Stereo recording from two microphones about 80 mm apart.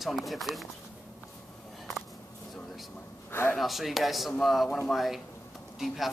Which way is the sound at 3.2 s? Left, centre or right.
Left.